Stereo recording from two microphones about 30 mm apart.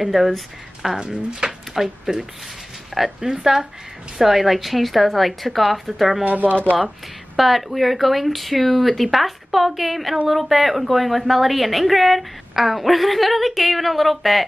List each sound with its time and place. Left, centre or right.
0.1 s a woman's voice: centre
0.9 s speech: right
1.4 s a woman's voice: centre
6.2 s speech: right
7.3 s a woman's voice: centre